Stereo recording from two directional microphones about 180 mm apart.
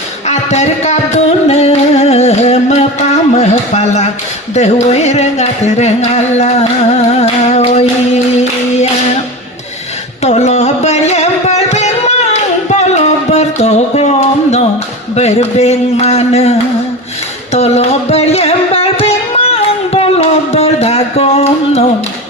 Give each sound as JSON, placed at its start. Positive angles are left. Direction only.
{"t": 0.3, "sound": "music", "side_deg": 35}
{"t": 3.3, "sound": "a sound", "side_deg": 40}
{"t": 4.5, "sound": "music", "side_deg": 40}
{"t": 10.2, "sound": "carnatic music", "side_deg": 35}
{"t": 15.1, "sound": "a sound", "side_deg": 35}
{"t": 17.5, "sound": "music", "side_deg": 35}